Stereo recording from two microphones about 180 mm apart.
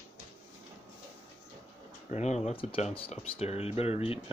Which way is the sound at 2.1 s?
40° left (ahead or behind).